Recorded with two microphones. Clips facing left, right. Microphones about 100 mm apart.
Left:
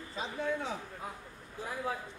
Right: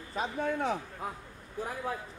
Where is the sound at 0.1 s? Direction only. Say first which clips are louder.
Right 3 dB; 55° right (ahead or behind).